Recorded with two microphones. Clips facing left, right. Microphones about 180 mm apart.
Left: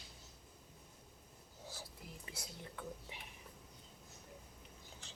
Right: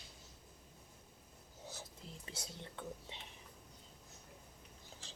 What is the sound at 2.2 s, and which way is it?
Whispering, 25° right (ahead or behind).